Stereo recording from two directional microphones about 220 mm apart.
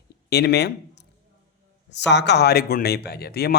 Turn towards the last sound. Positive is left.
turn(degrees=45)  # may be behind; listen again after turning